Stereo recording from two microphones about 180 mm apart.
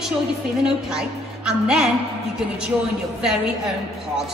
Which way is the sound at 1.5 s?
5° right (ahead or behind).